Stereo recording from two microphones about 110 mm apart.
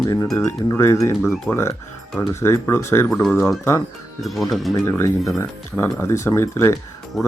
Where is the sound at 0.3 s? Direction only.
20° left (ahead or behind).